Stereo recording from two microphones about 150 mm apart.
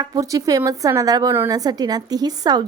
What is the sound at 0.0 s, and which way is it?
A woman's voice, 25° right (ahead or behind).